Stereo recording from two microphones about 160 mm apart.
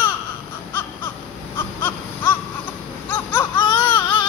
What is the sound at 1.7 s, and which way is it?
Baby cry, 10° left (ahead or behind).